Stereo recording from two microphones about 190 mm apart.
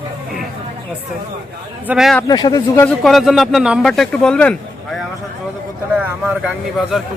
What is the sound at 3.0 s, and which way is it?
Speech, centre (ahead or behind).